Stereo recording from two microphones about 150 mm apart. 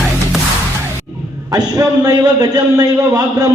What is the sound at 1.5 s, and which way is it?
A man's voice, 25° right (ahead or behind).